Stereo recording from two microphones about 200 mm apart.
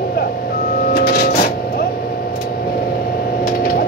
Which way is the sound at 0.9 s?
50° left (ahead or behind).